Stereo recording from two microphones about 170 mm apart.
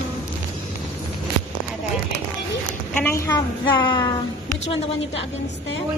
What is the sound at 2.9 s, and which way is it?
Speech, 10° left (ahead or behind).